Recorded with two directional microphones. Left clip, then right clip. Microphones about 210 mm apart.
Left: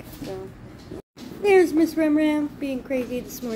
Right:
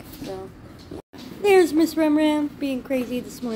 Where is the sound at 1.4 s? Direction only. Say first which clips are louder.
Right 1 dB; 15° right (ahead or behind).